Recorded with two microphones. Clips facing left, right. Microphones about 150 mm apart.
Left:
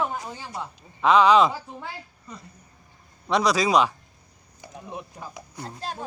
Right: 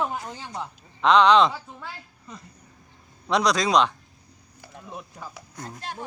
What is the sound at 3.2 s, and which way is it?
A man's voice, 5° left (ahead or behind).